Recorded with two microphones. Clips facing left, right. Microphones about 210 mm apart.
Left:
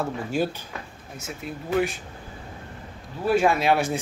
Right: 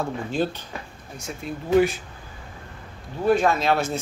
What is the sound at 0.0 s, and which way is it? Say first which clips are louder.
Speech: even; 10° left (ahead or behind).